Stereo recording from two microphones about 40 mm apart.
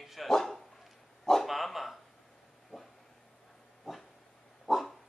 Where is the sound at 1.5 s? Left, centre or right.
Centre.